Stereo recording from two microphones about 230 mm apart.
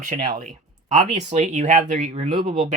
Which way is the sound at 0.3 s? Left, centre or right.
Right.